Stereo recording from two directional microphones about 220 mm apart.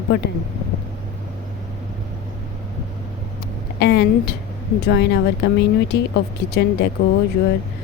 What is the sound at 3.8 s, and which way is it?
Speech, 50° left (ahead or behind).